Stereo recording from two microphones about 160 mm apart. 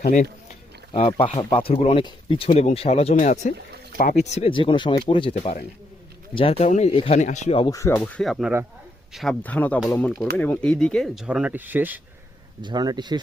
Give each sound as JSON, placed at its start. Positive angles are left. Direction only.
{"t": 0.9, "sound": "speech", "side_deg": 35}
{"t": 7.2, "sound": "speech", "side_deg": 50}
{"t": 7.6, "sound": "speech", "side_deg": 20}
{"t": 12.6, "sound": "speech", "side_deg": -25}